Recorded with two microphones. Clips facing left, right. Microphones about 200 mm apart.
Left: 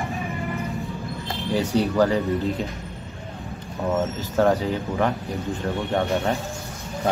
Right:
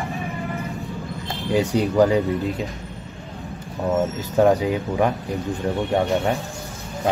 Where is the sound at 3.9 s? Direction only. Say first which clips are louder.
Right 3 dB; 15° right (ahead or behind).